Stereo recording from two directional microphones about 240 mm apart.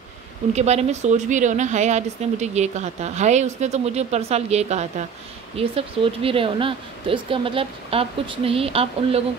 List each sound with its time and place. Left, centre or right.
0.5 s a woman's voice: right